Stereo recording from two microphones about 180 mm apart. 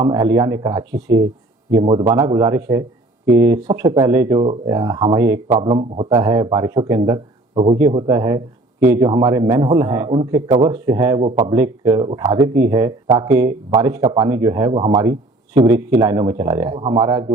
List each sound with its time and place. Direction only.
0.0 s speech: 20° right (ahead or behind)
7.5 s speech: 35° right (ahead or behind)
7.8 s speech: 20° right (ahead or behind)